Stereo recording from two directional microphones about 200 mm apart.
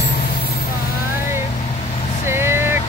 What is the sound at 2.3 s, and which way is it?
Vehicle, 10° right (ahead or behind).